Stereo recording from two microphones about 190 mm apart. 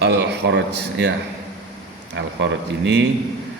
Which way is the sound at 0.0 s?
60° right (ahead or behind).